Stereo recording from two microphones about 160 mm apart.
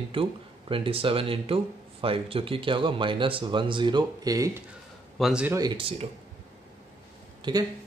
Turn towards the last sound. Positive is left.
turn(degrees=-30)  # may be behind; listen again after turning